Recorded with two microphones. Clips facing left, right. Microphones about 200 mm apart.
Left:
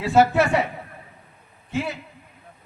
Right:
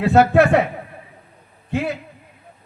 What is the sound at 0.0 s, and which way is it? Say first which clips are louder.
Speech: right 4 dB; 60° right (ahead or behind).